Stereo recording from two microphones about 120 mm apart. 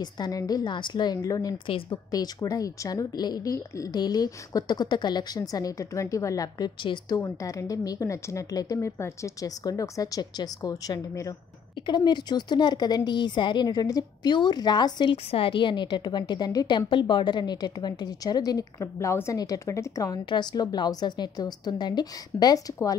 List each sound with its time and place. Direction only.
0.0 s a woman's voice: 30° left (ahead or behind)
6.8 s a woman's voice: 40° left (ahead or behind)
7.2 s speech: 25° left (ahead or behind)
11.8 s a woman's voice: 40° left (ahead or behind)
20.2 s a woman's voice: 40° left (ahead or behind)